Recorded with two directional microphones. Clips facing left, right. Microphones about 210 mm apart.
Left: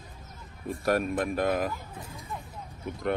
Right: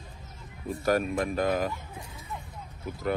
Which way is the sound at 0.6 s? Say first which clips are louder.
Right 1 dB; centre (ahead or behind).